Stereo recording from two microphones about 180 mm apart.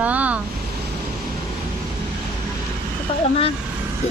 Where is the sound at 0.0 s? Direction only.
10° right (ahead or behind).